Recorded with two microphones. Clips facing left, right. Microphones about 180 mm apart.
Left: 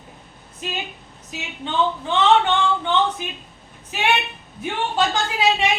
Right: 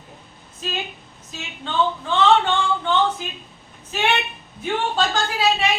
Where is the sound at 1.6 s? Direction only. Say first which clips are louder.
Even; 20° left (ahead or behind).